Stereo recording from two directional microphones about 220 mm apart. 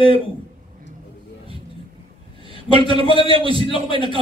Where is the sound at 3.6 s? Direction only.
20° left (ahead or behind).